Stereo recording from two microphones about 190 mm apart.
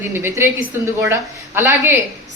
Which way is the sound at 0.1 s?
10° right (ahead or behind).